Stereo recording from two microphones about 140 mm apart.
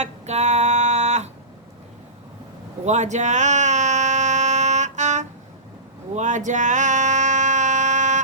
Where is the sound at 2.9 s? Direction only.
55° right (ahead or behind).